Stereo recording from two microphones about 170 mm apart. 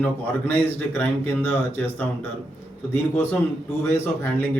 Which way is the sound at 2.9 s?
10° left (ahead or behind).